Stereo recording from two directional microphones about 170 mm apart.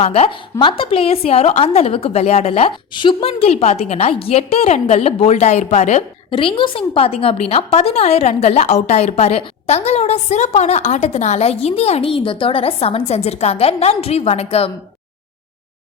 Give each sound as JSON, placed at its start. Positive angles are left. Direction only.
{"t": 0.0, "sound": "a woman's voice", "side_deg": 40}